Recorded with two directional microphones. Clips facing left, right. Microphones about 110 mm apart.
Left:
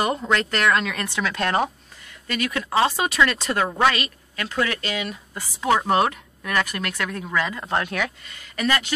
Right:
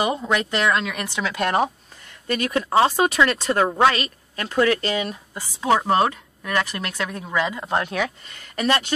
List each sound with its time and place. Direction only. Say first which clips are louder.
0.0 s a woman's voice: even; 15° right (ahead or behind)
2.2 s speech: right 3 dB; 35° right (ahead or behind)
5.3 s a woman's voice: right 1 dB; 10° right (ahead or behind)
5.9 s speech: right 1 dB; 25° right (ahead or behind)